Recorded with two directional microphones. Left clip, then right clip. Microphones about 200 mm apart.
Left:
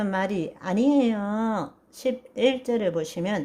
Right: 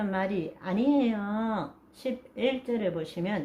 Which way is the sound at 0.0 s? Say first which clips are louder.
Left 4 dB; 45° left (ahead or behind).